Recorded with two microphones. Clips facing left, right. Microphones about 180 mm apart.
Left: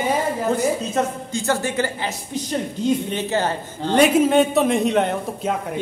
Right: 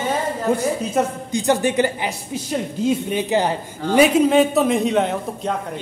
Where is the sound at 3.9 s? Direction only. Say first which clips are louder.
Right 1 dB; centre (ahead or behind).